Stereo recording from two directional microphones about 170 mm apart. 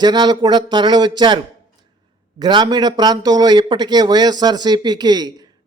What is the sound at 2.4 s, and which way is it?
Speech, 25° right (ahead or behind).